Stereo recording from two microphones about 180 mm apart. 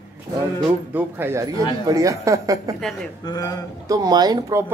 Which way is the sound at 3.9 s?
20° right (ahead or behind).